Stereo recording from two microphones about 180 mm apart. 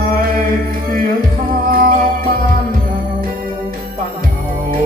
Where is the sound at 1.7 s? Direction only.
55° right (ahead or behind).